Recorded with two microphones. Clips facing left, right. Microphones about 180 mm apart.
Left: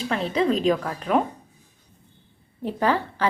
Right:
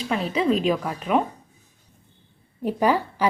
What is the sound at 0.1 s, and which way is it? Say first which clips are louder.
A woman's voice: right 1 dB; 5° right (ahead or behind).